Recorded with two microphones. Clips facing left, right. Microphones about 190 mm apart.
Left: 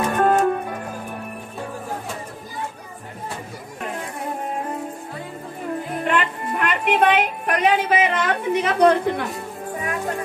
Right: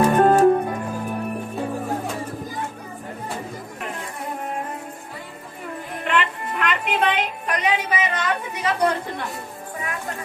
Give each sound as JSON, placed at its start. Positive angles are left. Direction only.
{"t": 0.1, "sound": "music", "side_deg": -35}
{"t": 6.0, "sound": "music", "side_deg": 45}